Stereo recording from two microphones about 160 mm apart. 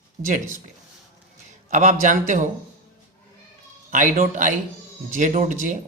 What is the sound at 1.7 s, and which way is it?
Speech, 55° right (ahead or behind).